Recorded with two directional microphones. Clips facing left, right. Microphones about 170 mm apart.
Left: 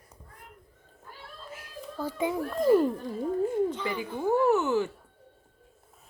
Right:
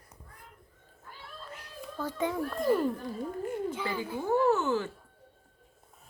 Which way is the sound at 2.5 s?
Centre (ahead or behind).